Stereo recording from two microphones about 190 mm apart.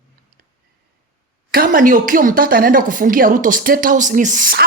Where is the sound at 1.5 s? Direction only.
45° right (ahead or behind).